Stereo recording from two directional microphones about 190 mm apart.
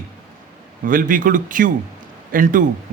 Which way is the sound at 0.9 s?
45° right (ahead or behind).